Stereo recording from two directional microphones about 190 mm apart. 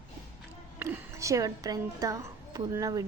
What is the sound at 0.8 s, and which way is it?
A woman's voice, 15° right (ahead or behind).